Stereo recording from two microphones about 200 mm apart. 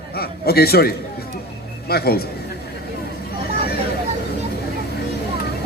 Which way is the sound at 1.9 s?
50° left (ahead or behind).